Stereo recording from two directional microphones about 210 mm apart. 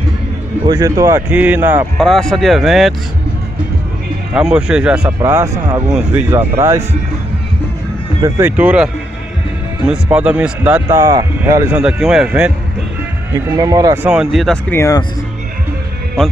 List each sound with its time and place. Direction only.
0.7 s speech: 15° right (ahead or behind)
2.0 s speech: centre (ahead or behind)
4.3 s speech: 5° right (ahead or behind)
8.2 s speech: 10° right (ahead or behind)
13.3 s speech: 15° right (ahead or behind)
14.1 s speech: centre (ahead or behind); by 15.0 s 15° left (ahead or behind)